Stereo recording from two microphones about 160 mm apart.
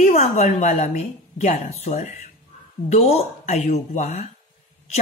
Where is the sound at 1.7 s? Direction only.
45° left (ahead or behind).